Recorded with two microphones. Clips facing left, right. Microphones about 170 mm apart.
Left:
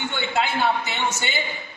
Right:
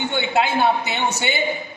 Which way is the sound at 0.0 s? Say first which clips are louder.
Right 4 dB; 15° right (ahead or behind).